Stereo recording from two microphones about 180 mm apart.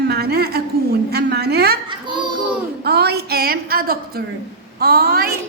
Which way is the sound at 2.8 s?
65° right (ahead or behind).